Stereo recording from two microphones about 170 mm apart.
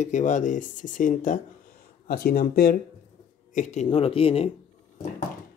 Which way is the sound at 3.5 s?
45° left (ahead or behind).